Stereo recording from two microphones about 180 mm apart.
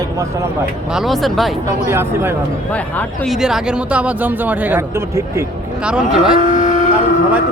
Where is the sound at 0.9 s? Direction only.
Centre (ahead or behind).